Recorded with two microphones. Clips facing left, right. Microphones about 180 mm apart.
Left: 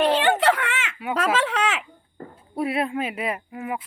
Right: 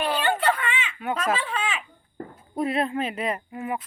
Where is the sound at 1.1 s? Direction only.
90° left.